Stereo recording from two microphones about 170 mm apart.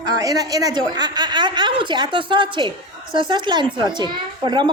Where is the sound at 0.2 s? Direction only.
20° right (ahead or behind).